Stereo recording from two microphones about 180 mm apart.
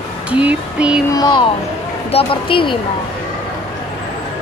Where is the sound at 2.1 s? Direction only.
30° left (ahead or behind).